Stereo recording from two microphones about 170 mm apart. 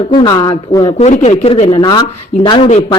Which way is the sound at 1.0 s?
45° left (ahead or behind).